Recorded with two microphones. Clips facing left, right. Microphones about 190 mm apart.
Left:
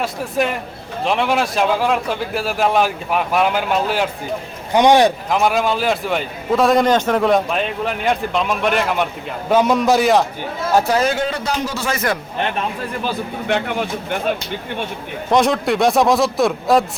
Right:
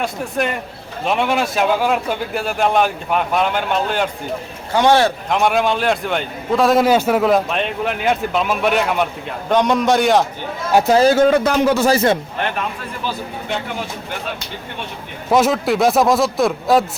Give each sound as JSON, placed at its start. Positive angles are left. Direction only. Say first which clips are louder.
{"t": 0.0, "sound": "a man's voice", "louder": "left 1 dB", "side_deg": 0}
{"t": 4.7, "sound": "speech", "louder": "left 2 dB", "side_deg": 15}
{"t": 5.3, "sound": "a man's voice", "louder": "even", "side_deg": 0}
{"t": 10.8, "sound": "a man's voice", "louder": "right 5 dB", "side_deg": -25}
{"t": 11.9, "sound": "speech", "louder": "right 6 dB", "side_deg": -25}
{"t": 15.3, "sound": "a man's voice", "louder": "right 1 dB", "side_deg": -5}